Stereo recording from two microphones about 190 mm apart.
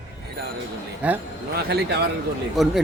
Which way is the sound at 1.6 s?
55° right (ahead or behind).